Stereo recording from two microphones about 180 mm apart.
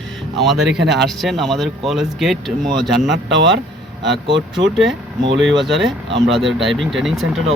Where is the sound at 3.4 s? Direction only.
85° right.